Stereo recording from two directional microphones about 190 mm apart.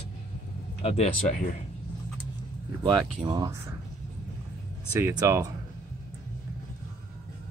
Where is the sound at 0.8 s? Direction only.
35° left (ahead or behind).